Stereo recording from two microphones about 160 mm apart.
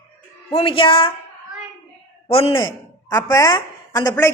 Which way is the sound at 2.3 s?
35° left (ahead or behind).